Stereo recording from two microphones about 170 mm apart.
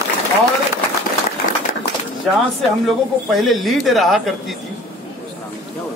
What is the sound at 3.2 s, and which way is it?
Speech, centre (ahead or behind).